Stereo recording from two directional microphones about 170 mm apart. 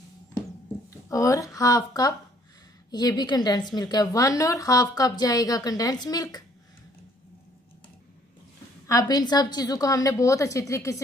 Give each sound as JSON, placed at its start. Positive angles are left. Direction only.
{"t": 0.8, "sound": "a woman's voice", "side_deg": 20}
{"t": 8.8, "sound": "a woman's voice", "side_deg": 20}